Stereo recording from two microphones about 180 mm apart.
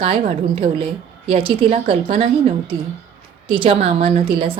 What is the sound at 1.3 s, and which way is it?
A woman's voice, 30° right (ahead or behind).